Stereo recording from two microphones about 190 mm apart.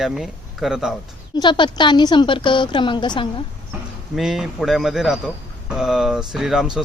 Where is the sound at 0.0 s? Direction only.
Centre (ahead or behind).